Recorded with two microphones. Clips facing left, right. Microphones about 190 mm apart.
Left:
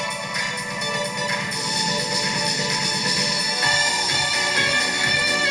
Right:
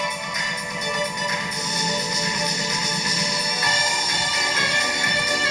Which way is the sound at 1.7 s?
65° left (ahead or behind).